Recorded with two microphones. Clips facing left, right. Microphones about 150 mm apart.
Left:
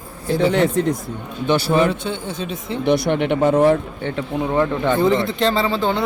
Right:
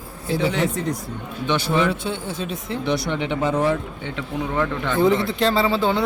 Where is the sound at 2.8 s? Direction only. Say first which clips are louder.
Left 7 dB; 55° left (ahead or behind).